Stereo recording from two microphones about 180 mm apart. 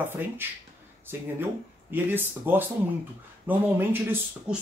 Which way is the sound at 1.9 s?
10° right (ahead or behind).